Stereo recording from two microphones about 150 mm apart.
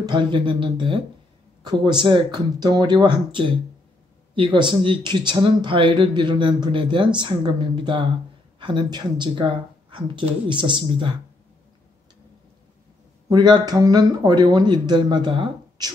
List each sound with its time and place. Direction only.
0.0 s speech: 30° right (ahead or behind)
13.3 s speech: 25° right (ahead or behind)